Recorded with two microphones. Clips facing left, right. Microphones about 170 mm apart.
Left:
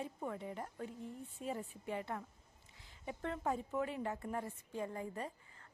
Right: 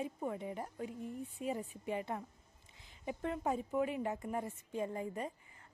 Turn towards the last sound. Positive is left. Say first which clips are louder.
# right 3 dB
turn(degrees=-15)  # may be behind; listen again after turning